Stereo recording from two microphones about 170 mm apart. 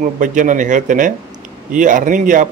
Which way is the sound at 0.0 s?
50° right (ahead or behind).